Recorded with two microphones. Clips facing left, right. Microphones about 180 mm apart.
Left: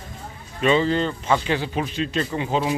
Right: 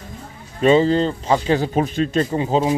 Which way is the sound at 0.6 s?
35° right (ahead or behind).